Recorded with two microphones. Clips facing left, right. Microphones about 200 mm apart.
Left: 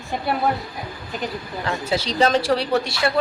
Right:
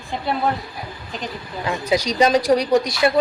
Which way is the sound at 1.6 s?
15° right (ahead or behind).